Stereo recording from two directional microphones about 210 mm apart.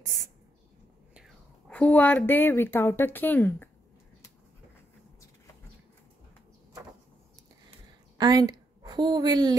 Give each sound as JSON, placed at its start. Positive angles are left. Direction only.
{"t": 1.7, "sound": "a woman's voice", "side_deg": 5}
{"t": 8.2, "sound": "a woman's voice", "side_deg": -20}